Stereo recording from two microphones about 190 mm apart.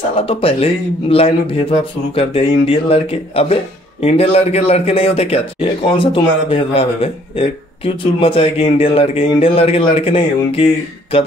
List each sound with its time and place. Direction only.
0.2 s speech: 30° left (ahead or behind)